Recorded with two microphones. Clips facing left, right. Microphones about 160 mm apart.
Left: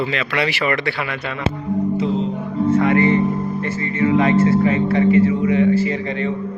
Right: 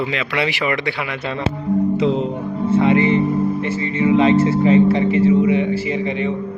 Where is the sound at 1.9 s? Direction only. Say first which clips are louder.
Right 2 dB; 90° right.